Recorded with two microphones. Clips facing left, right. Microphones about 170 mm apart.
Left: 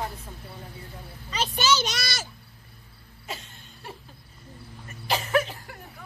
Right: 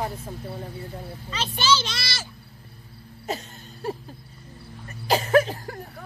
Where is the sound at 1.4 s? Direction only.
45° left (ahead or behind).